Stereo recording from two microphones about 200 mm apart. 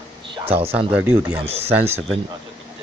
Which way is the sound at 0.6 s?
10° right (ahead or behind).